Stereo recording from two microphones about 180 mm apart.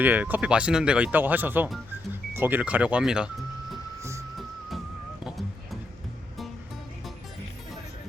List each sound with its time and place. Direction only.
0.0 s speech: 10° right (ahead or behind)